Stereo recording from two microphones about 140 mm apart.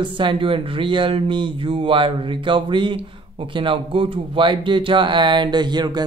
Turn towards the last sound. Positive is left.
turn(degrees=-30)  # may be behind; listen again after turning